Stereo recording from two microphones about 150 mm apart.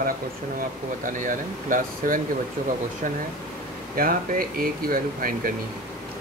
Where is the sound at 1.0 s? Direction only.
60° right (ahead or behind).